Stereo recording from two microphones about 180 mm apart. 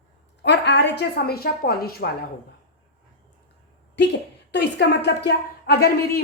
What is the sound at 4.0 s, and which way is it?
A woman's voice, 75° left (ahead or behind).